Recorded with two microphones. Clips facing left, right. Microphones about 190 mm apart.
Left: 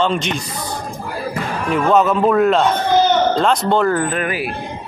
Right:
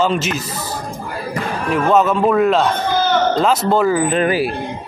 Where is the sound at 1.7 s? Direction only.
Centre (ahead or behind).